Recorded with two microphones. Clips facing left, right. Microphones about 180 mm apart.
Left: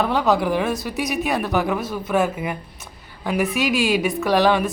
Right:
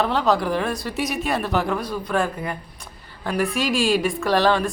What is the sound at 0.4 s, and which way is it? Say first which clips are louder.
Speech: left 2 dB; 5° left (ahead or behind).